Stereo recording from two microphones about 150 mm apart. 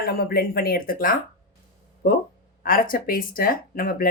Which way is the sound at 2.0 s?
80° left.